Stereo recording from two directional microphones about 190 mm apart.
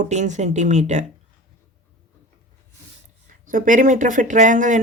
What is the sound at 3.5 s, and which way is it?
Speech, 45° right (ahead or behind).